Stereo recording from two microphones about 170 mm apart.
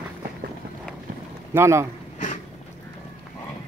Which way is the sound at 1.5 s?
15° right (ahead or behind).